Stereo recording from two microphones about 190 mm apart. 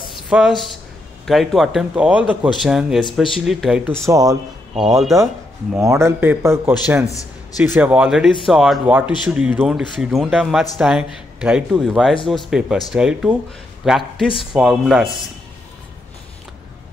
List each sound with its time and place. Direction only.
0.3 s speech: 5° right (ahead or behind)
4.0 s a man's voice: 20° right (ahead or behind)